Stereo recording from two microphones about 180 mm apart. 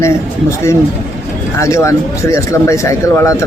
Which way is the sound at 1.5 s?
15° left (ahead or behind).